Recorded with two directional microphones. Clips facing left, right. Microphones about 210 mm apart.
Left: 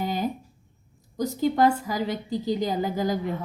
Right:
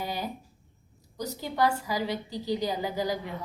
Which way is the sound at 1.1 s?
50° left (ahead or behind).